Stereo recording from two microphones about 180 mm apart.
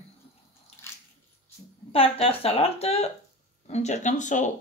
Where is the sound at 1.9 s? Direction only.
35° left (ahead or behind).